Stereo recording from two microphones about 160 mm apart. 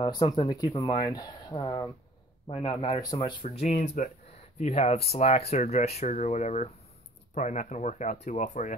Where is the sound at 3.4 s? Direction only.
50° left (ahead or behind).